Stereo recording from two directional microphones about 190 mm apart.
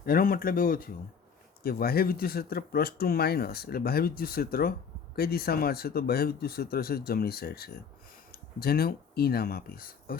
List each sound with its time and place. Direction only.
0.0 s speech: 50° left (ahead or behind)